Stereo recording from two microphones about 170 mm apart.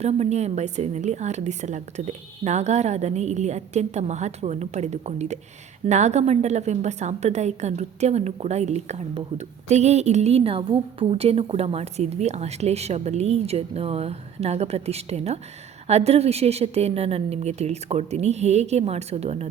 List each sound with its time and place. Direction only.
0.0 s a woman's voice: 40° right (ahead or behind)